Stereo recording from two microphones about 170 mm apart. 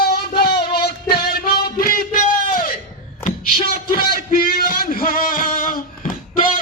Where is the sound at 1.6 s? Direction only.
55° left (ahead or behind).